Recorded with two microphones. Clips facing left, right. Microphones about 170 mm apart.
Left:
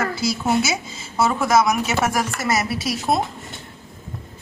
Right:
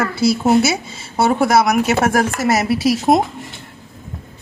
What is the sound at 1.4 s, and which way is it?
Speech, 65° right (ahead or behind).